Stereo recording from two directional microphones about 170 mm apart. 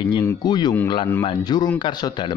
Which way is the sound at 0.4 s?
25° left (ahead or behind).